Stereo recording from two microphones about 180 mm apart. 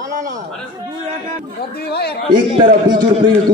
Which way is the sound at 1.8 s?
65° left (ahead or behind).